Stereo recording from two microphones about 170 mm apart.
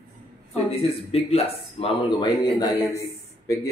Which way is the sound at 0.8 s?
35° left (ahead or behind).